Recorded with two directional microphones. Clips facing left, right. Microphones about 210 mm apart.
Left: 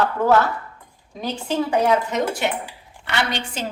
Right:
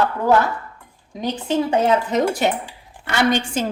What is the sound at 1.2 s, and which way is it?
Speech, 20° right (ahead or behind).